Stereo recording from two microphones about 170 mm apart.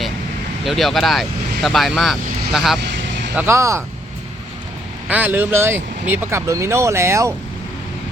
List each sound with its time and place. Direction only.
0.6 s speech: centre (ahead or behind)
3.3 s speech: 15° right (ahead or behind)
5.0 s speech: 10° right (ahead or behind)